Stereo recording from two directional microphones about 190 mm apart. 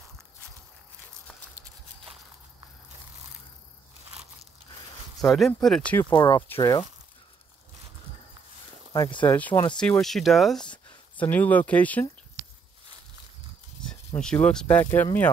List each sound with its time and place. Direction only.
5.2 s speech: centre (ahead or behind)
6.1 s speech: 25° left (ahead or behind)
8.9 s speech: 20° left (ahead or behind)
9.4 s speech: 10° left (ahead or behind)
13.8 s speech: 5° left (ahead or behind)